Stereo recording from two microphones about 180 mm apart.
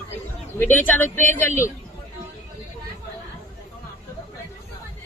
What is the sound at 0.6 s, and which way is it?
Speech, 10° left (ahead or behind).